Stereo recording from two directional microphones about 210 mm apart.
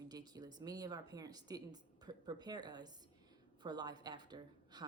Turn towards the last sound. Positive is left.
turn(degrees=-20)  # may be behind; listen again after turning